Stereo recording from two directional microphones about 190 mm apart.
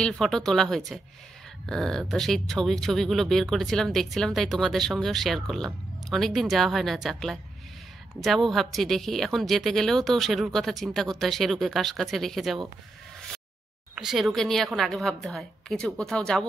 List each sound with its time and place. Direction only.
0.0 s a woman's voice: 5° left (ahead or behind)
13.9 s a woman's voice: centre (ahead or behind)